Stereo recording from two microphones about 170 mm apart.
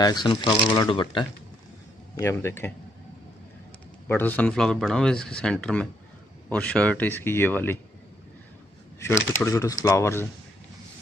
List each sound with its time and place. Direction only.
0.0 s speech: 25° left (ahead or behind)
2.1 s speech: 15° left (ahead or behind)
4.1 s a man's voice: 10° left (ahead or behind)
9.4 s speech: 15° left (ahead or behind)